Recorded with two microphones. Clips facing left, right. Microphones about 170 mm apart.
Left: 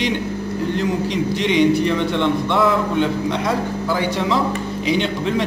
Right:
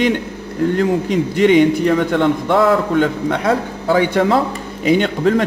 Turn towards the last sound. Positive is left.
turn(degrees=-50)  # may be behind; listen again after turning